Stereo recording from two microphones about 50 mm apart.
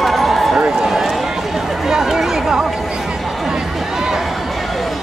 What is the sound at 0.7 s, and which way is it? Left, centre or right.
Speech, centre.